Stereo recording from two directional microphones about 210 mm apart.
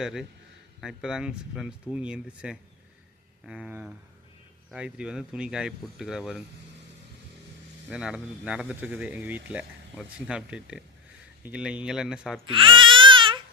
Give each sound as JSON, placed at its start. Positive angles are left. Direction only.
{"t": 0.0, "sound": "speech", "side_deg": 0}
{"t": 7.9, "sound": "speech", "side_deg": -5}
{"t": 12.5, "sound": "baby cry", "side_deg": -25}